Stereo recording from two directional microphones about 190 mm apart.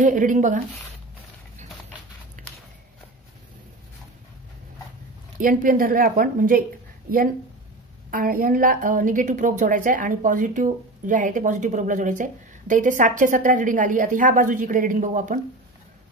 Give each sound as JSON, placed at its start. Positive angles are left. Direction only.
{"t": 0.0, "sound": "a woman's voice", "side_deg": -45}
{"t": 2.4, "sound": "a sound", "side_deg": -40}
{"t": 5.4, "sound": "a woman's voice", "side_deg": -45}
{"t": 8.1, "sound": "a woman's voice", "side_deg": -50}